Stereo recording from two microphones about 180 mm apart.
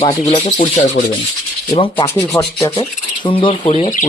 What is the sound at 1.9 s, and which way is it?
Speech, 15° left (ahead or behind).